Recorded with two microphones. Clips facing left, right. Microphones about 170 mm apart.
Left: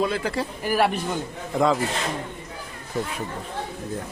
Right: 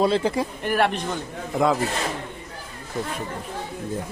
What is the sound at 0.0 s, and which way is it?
Speech, 25° right (ahead or behind).